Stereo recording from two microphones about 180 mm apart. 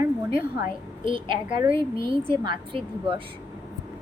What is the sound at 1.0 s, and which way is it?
A woman's voice, 30° right (ahead or behind).